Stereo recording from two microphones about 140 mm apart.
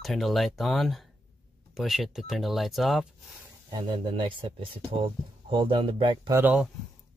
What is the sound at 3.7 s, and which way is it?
Speech, 35° right (ahead or behind).